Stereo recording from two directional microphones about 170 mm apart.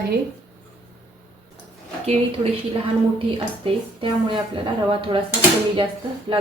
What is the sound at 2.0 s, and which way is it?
Speech, 40° right (ahead or behind).